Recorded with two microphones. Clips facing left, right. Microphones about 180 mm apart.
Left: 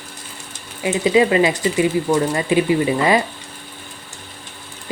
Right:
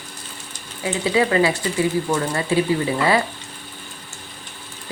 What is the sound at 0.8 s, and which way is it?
Speech, 20° left (ahead or behind).